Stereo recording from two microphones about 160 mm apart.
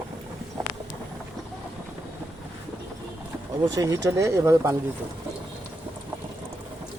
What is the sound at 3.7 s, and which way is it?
Speech, 20° right (ahead or behind).